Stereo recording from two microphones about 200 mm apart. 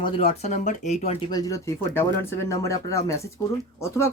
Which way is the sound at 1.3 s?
20° left (ahead or behind).